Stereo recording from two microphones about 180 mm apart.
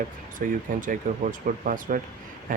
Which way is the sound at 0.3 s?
50° right (ahead or behind).